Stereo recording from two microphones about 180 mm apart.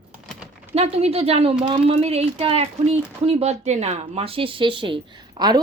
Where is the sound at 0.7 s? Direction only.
35° right (ahead or behind).